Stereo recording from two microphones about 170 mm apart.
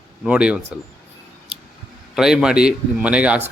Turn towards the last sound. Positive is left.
turn(degrees=-5)  # may be behind; listen again after turning